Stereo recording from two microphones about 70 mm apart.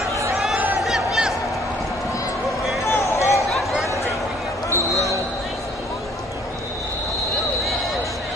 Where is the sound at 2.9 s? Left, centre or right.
Left.